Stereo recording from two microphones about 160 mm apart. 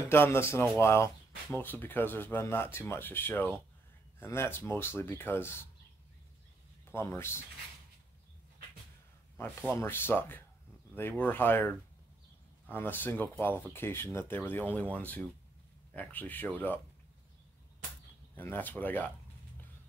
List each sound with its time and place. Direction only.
0.1 s speech: 15° left (ahead or behind)
7.2 s speech: 15° left (ahead or behind)
9.4 s speech: 15° left (ahead or behind)
18.3 s speech: 10° left (ahead or behind)